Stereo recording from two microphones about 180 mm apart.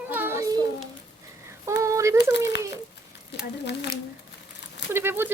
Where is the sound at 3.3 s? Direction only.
75° left (ahead or behind).